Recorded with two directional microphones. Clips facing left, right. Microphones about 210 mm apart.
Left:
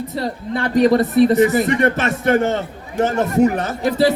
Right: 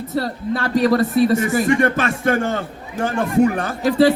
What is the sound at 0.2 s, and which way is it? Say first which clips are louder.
A man's voice: right 1 dB; 20° left (ahead or behind).